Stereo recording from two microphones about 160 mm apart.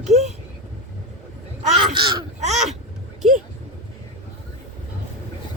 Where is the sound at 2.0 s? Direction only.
30° right (ahead or behind).